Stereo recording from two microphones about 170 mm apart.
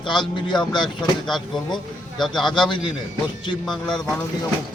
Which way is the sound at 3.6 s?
Centre (ahead or behind).